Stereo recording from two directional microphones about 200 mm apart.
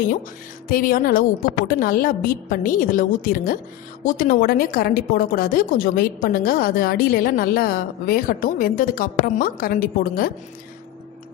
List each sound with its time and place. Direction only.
0.7 s a woman's voice: 45° left (ahead or behind)